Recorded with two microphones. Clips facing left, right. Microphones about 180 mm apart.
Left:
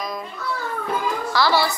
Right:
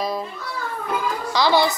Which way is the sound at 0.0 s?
30° right (ahead or behind).